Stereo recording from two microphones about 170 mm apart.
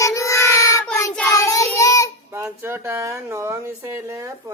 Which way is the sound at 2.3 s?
15° right (ahead or behind).